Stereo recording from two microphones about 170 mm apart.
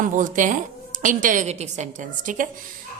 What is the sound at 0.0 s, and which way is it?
A woman's voice, 50° right (ahead or behind).